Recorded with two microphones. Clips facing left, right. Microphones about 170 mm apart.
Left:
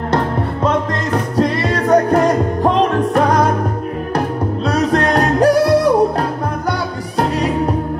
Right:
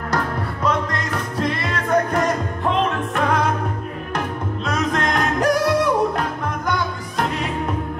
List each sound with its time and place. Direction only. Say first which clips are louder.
0.7 s music: left 4 dB; 35° left (ahead or behind)
4.6 s music: left 6 dB; 35° left (ahead or behind)